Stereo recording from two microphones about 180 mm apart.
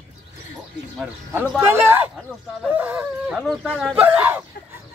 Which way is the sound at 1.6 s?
15° right (ahead or behind).